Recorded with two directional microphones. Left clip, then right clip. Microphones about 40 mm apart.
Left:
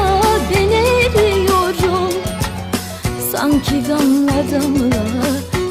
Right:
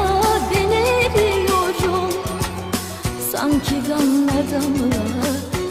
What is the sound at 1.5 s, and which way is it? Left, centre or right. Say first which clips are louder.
Music: left 3 dB; right.